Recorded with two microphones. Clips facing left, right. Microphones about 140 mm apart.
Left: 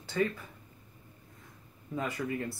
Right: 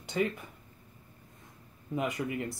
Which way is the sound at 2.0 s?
20° right (ahead or behind).